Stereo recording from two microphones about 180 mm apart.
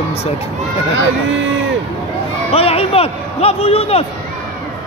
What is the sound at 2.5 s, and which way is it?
A man's voice, 35° left (ahead or behind).